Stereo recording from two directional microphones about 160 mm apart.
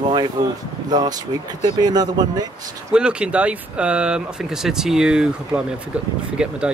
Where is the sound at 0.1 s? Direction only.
25° right (ahead or behind).